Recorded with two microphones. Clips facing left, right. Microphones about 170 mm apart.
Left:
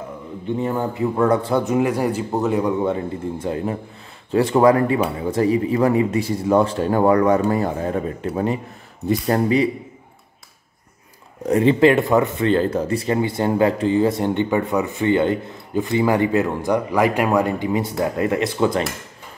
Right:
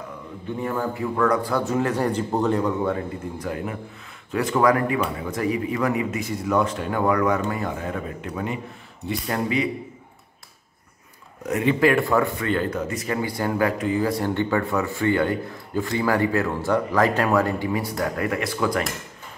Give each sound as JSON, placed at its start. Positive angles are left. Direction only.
{"t": 0.6, "sound": "speech", "side_deg": 20}
{"t": 11.4, "sound": "speech", "side_deg": 30}